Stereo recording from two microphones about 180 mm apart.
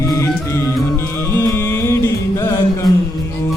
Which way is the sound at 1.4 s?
15° left (ahead or behind).